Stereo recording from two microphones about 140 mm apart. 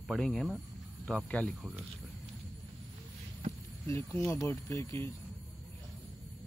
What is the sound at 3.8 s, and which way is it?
Speech, 20° left (ahead or behind).